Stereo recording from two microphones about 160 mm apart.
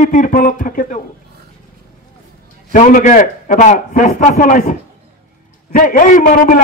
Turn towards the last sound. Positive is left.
turn(degrees=55)  # may be behind; listen again after turning